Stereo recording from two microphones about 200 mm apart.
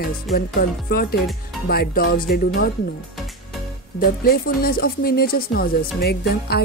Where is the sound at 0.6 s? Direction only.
50° left (ahead or behind).